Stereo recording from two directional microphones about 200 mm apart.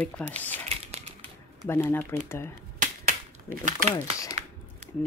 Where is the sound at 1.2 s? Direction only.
10° left (ahead or behind).